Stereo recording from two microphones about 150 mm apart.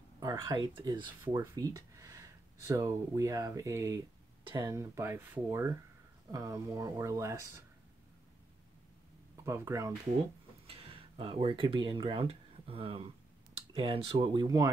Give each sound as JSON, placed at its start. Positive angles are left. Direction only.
{"t": 0.2, "sound": "speech", "side_deg": -25}
{"t": 9.4, "sound": "speech", "side_deg": -20}
{"t": 10.7, "sound": "speech", "side_deg": -40}